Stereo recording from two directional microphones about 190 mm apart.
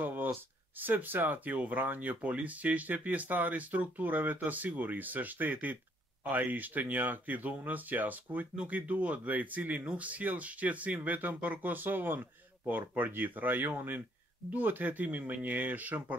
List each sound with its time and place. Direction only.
0.0 s speech: 10° right (ahead or behind)